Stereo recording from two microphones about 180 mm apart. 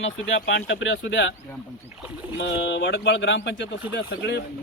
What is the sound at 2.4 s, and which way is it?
Speech, 85° left.